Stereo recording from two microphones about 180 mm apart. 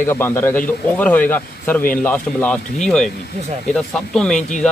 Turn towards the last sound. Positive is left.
turn(degrees=5)  # may be behind; listen again after turning